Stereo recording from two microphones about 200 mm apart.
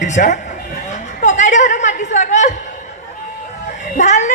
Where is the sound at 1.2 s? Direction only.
40° left (ahead or behind).